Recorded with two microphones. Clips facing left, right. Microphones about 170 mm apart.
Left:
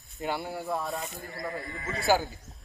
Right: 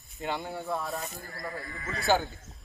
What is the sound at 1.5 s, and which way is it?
Speech, 25° left (ahead or behind).